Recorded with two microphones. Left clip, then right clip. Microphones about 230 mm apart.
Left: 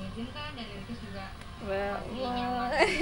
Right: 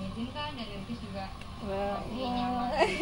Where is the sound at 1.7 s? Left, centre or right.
Left.